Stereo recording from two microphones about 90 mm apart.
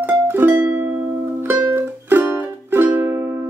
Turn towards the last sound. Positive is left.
turn(degrees=-30)  # may be behind; listen again after turning